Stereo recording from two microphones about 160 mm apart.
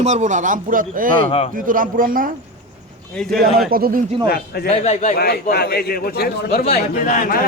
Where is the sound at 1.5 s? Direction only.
60° right (ahead or behind).